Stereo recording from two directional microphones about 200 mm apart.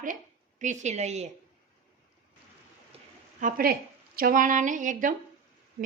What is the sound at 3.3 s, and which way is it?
A woman's voice, 45° right (ahead or behind).